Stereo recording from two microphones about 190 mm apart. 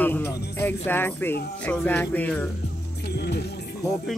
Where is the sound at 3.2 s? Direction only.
60° left (ahead or behind).